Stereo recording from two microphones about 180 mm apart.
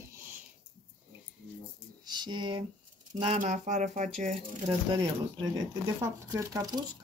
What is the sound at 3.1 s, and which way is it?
Speech, 40° right (ahead or behind).